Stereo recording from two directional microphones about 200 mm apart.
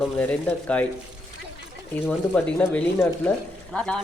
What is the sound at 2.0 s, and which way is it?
Speech, 5° left (ahead or behind).